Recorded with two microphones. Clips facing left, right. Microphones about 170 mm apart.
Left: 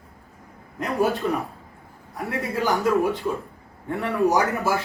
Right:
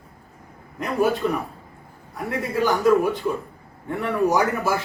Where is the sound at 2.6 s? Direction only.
Centre (ahead or behind).